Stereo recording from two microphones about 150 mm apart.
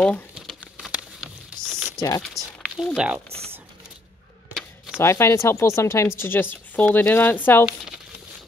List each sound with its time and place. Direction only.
0.3 s patter: 5° right (ahead or behind)
2.0 s speech: 25° left (ahead or behind)
2.2 s speech: centre (ahead or behind)
3.3 s speech: 40° right (ahead or behind)
4.9 s speech: 20° left (ahead or behind)